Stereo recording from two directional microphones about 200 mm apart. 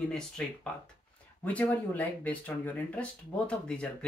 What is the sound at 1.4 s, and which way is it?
Speech, 10° left (ahead or behind).